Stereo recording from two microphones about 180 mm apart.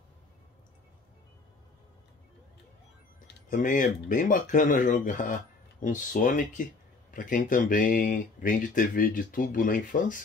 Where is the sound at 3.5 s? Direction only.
45° left (ahead or behind).